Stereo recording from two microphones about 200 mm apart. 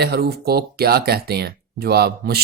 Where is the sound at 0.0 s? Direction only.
55° right (ahead or behind).